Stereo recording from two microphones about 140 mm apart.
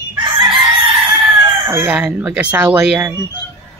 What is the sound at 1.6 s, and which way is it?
Speech, 15° right (ahead or behind).